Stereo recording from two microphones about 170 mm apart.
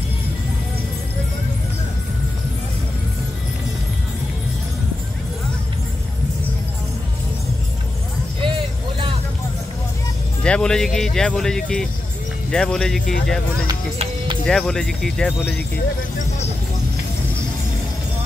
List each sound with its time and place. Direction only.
8.4 s vehicle: 30° right (ahead or behind)
10.4 s speech: 5° left (ahead or behind)
13.9 s music: 30° right (ahead or behind)
14.4 s speech: 5° left (ahead or behind)